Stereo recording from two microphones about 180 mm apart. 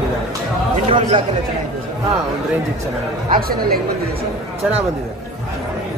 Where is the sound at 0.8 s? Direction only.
30° right (ahead or behind).